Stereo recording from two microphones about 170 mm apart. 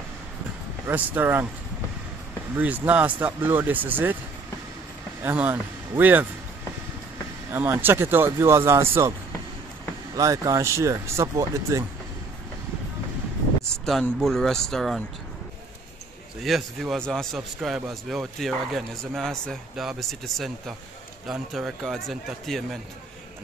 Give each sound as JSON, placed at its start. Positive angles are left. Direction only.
{"t": 0.8, "sound": "speech", "side_deg": -10}
{"t": 2.5, "sound": "speech", "side_deg": -10}
{"t": 5.2, "sound": "speech", "side_deg": -10}
{"t": 7.5, "sound": "speech", "side_deg": -15}
{"t": 10.1, "sound": "speech", "side_deg": -20}
{"t": 13.8, "sound": "a man's voice", "side_deg": 0}
{"t": 16.4, "sound": "a man's voice", "side_deg": 0}